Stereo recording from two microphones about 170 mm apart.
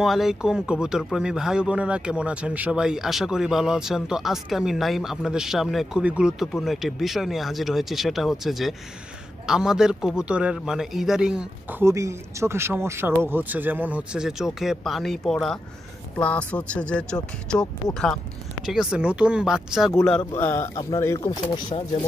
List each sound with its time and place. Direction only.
0.0 s speech: centre (ahead or behind)
11.8 s speech: 15° right (ahead or behind); by 21.7 s 20° left (ahead or behind)